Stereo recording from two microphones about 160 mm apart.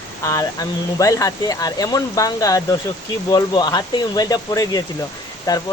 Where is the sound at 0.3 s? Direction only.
20° left (ahead or behind).